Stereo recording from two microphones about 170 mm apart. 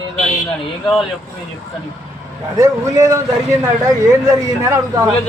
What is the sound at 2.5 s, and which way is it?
A man's voice, 20° right (ahead or behind).